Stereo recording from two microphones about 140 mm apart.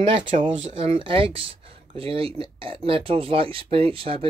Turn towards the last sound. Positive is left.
turn(degrees=-40)  # may be behind; listen again after turning